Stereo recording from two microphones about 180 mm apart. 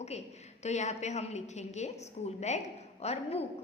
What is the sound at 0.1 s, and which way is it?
A woman's voice, 35° left (ahead or behind).